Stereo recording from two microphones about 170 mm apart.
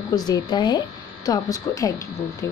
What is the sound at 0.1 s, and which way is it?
Speech, 25° left (ahead or behind).